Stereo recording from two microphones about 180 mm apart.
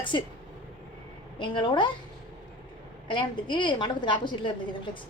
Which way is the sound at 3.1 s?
25° left (ahead or behind).